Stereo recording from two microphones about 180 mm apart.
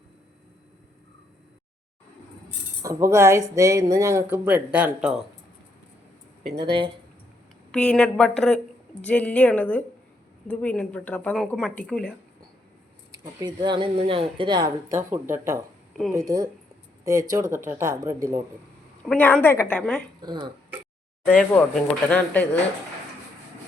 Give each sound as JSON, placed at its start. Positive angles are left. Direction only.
{"t": 2.8, "sound": "speech", "side_deg": -15}
{"t": 6.7, "sound": "speech", "side_deg": -25}
{"t": 7.7, "sound": "a woman's voice", "side_deg": 5}
{"t": 13.1, "sound": "speech", "side_deg": -25}
{"t": 19.0, "sound": "a woman's voice", "side_deg": 10}
{"t": 20.2, "sound": "speech", "side_deg": -25}
{"t": 21.5, "sound": "a woman's voice", "side_deg": 10}